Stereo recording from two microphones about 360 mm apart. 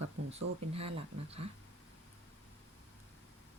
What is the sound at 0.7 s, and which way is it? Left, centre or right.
Speech, centre.